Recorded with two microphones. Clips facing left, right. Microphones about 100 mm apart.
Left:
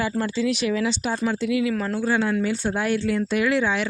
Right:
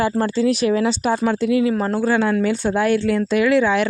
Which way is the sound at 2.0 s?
60° right (ahead or behind).